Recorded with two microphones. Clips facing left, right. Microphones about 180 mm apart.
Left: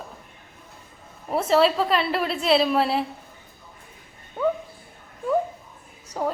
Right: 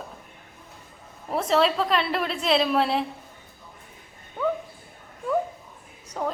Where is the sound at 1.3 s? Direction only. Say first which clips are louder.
Left 3 dB; 5° left (ahead or behind).